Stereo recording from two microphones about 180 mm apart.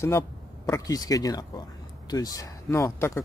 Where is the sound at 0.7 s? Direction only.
20° left (ahead or behind).